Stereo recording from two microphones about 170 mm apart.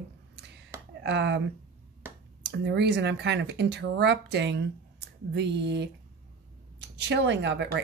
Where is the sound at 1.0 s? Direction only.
90° right.